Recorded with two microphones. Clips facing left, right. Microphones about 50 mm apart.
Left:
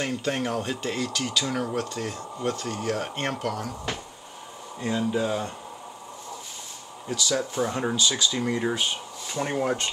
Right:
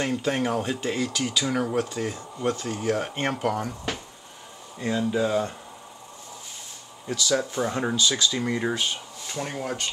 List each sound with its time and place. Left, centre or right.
0.0 s speech: centre
4.7 s speech: centre
7.1 s speech: centre
7.9 s speech: centre
8.7 s speech: centre